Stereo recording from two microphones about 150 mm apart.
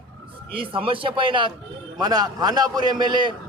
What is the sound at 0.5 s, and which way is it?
A man's voice, 35° right (ahead or behind).